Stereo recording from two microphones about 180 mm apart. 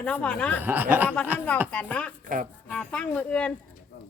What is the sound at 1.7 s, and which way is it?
Speech, 5° left (ahead or behind).